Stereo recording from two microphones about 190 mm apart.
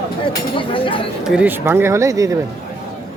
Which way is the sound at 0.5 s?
25° left (ahead or behind).